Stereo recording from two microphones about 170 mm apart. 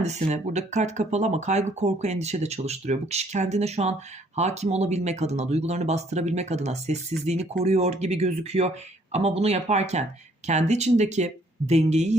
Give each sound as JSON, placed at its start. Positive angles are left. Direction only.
{"t": 0.0, "sound": "speech", "side_deg": -40}